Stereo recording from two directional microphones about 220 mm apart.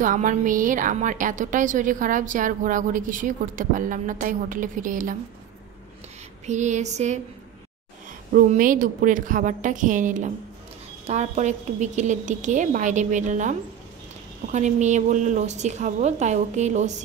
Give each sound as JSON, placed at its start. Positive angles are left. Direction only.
{"t": 0.0, "sound": "a woman's voice", "side_deg": -35}
{"t": 6.4, "sound": "a woman's voice", "side_deg": -30}
{"t": 8.3, "sound": "a woman's voice", "side_deg": -40}